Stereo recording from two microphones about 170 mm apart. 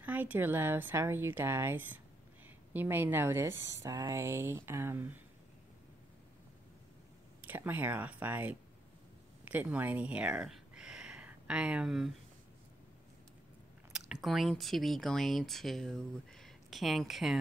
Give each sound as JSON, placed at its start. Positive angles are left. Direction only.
{"t": 0.0, "sound": "speech", "side_deg": -10}
{"t": 7.4, "sound": "speech", "side_deg": -10}
{"t": 13.9, "sound": "speech", "side_deg": 0}